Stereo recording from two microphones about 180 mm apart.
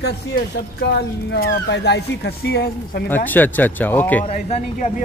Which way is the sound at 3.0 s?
10° left (ahead or behind).